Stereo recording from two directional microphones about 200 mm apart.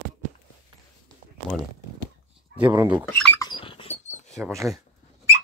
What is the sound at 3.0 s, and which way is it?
Rodents, 10° left (ahead or behind).